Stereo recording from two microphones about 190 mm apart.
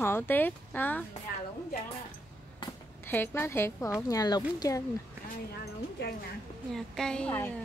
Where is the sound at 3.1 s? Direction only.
10° left (ahead or behind).